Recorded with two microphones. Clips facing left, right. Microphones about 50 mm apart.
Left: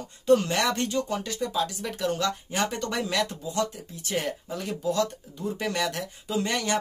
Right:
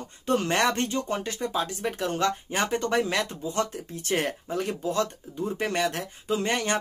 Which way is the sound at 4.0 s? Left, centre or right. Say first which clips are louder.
Right 2 dB; right.